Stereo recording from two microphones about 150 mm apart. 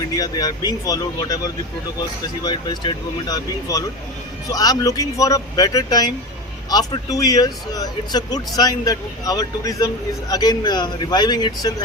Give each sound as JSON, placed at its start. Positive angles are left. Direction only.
{"t": 0.2, "sound": "a man's voice", "side_deg": 25}